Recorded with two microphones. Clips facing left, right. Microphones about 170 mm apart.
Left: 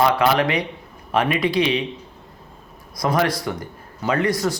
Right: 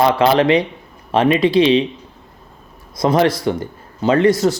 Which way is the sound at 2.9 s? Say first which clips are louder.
Right 6 dB; 25° right (ahead or behind).